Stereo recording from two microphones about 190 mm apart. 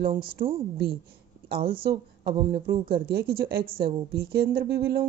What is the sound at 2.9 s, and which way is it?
Speech, 55° right (ahead or behind).